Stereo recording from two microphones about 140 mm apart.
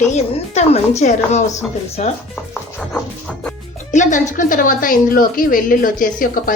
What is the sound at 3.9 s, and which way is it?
A woman's voice, 65° left (ahead or behind).